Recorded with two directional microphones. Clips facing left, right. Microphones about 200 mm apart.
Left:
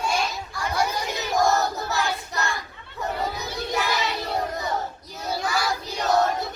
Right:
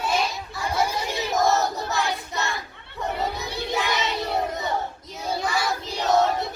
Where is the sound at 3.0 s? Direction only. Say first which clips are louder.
Right 1 dB; centre (ahead or behind).